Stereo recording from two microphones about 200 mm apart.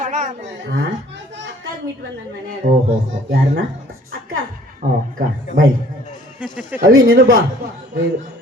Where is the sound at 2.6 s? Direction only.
50° right (ahead or behind).